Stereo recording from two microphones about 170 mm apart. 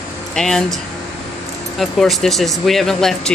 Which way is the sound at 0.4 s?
5° left (ahead or behind).